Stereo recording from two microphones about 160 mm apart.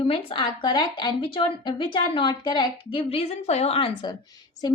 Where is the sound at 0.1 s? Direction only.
30° left (ahead or behind).